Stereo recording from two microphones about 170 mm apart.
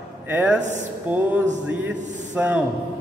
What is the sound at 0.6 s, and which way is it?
Speech, 45° right (ahead or behind).